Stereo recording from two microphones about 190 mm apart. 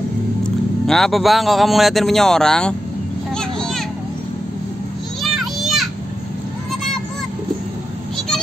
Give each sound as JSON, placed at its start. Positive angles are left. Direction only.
{"t": 0.4, "sound": "speech", "side_deg": 0}
{"t": 3.3, "sound": "a sound", "side_deg": 5}
{"t": 5.2, "sound": "children playing", "side_deg": 0}